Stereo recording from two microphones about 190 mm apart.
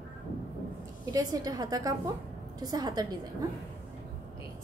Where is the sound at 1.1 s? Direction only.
20° right (ahead or behind).